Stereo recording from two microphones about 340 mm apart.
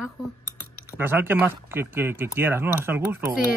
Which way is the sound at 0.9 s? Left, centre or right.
Centre.